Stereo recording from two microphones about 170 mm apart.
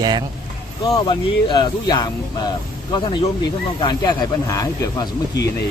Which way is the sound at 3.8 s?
25° left (ahead or behind).